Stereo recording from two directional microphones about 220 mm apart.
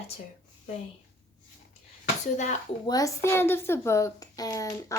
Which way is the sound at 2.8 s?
15° left (ahead or behind).